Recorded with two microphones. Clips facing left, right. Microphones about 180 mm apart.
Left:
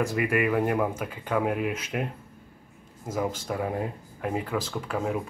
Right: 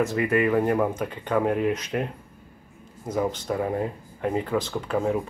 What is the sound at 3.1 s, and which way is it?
Speech, 5° left (ahead or behind).